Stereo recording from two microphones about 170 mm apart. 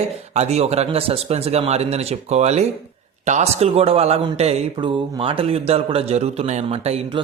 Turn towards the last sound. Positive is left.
turn(degrees=-40)  # may be behind; listen again after turning